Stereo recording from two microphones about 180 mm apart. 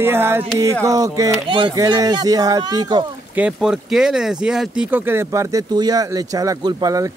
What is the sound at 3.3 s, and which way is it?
Speech, 5° right (ahead or behind).